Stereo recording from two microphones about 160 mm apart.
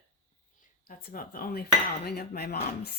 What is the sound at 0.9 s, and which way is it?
Speech, 60° left (ahead or behind).